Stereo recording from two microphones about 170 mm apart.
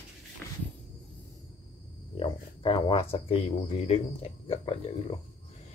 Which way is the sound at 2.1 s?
30° left (ahead or behind).